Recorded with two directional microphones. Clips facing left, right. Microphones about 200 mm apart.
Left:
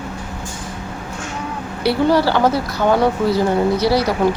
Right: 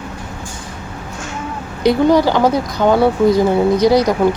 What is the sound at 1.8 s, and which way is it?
Speech, 15° right (ahead or behind).